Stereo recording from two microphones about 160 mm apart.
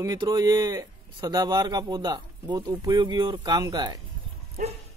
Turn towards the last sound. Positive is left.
turn(degrees=-55)  # may be behind; listen again after turning